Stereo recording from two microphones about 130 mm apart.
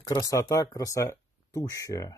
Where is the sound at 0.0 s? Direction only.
25° left (ahead or behind).